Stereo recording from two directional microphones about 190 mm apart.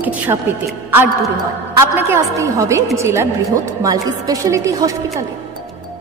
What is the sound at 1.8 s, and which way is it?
A woman's voice, 15° right (ahead or behind).